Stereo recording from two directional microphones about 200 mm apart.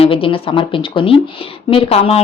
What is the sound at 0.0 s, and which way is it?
A woman's voice, 25° left (ahead or behind).